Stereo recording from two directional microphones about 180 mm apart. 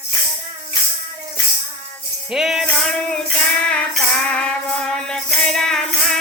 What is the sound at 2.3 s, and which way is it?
Music, centre (ahead or behind).